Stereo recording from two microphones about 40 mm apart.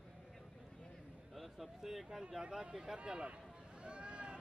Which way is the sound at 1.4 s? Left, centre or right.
Centre.